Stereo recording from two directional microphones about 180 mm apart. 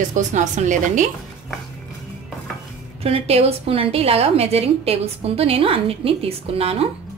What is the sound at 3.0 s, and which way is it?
A woman's voice, 35° right (ahead or behind).